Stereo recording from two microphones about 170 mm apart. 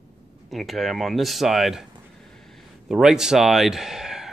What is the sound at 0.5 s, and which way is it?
Speech, centre (ahead or behind).